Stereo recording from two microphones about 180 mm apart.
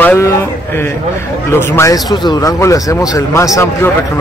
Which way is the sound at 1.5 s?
15° left (ahead or behind).